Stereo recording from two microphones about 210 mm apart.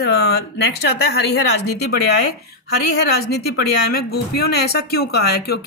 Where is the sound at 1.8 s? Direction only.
50° left (ahead or behind).